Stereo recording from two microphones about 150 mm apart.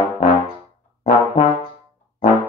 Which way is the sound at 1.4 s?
35° left (ahead or behind).